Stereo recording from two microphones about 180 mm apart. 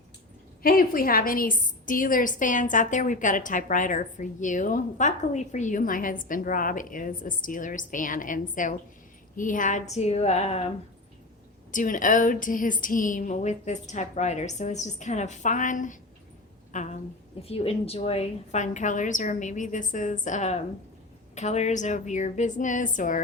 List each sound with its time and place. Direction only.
0.6 s a woman's voice: 55° left (ahead or behind); by 10.6 s 35° left (ahead or behind)
11.7 s a woman's voice: 45° left (ahead or behind)